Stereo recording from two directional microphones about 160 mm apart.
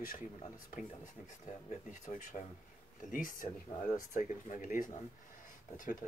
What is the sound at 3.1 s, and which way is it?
Speech, 55° left (ahead or behind).